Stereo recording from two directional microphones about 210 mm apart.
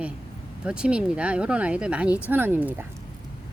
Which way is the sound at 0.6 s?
5° right (ahead or behind).